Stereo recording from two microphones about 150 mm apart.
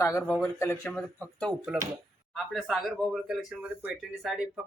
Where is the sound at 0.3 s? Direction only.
5° left (ahead or behind).